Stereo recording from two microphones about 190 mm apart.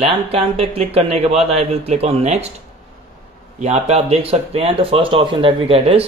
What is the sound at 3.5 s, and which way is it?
A man's voice, 35° right (ahead or behind).